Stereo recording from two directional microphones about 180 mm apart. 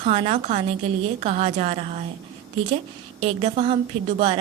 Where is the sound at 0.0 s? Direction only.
35° right (ahead or behind).